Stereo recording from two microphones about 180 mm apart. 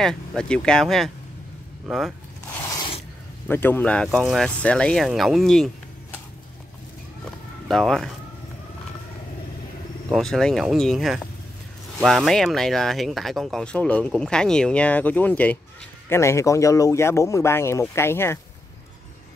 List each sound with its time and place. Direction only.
0.0 s speech: 5° left (ahead or behind)
2.7 s filing: 25° left (ahead or behind)
3.4 s speech: 10° left (ahead or behind)
7.6 s speech: centre (ahead or behind)
10.0 s speech: centre (ahead or behind)